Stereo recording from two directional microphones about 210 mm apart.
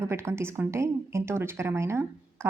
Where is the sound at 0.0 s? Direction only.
10° right (ahead or behind).